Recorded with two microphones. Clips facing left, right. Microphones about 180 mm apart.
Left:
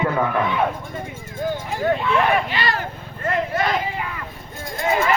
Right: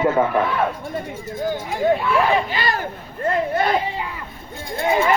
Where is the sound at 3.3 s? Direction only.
30° right (ahead or behind).